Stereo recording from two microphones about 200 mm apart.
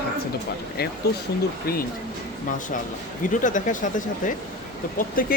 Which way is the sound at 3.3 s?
40° left (ahead or behind).